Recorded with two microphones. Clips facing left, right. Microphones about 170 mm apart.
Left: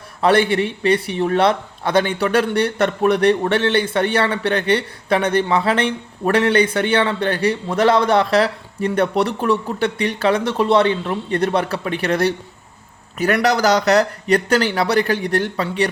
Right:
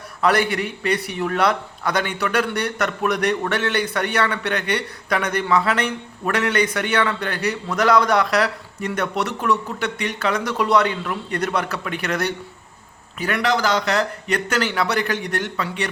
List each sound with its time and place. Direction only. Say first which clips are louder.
0.2 s a man's voice: left 4 dB; 30° left (ahead or behind)
13.1 s speech: left 4 dB; 45° left (ahead or behind)